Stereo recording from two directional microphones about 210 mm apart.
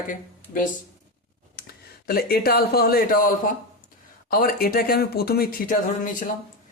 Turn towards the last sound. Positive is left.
turn(degrees=40)  # may be behind; listen again after turning